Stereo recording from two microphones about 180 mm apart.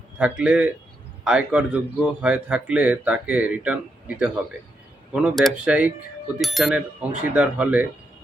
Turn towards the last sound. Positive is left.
turn(degrees=-5)  # may be behind; listen again after turning